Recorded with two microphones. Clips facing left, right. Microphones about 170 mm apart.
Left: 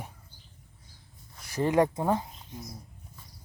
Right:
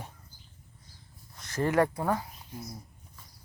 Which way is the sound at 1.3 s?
10° left (ahead or behind).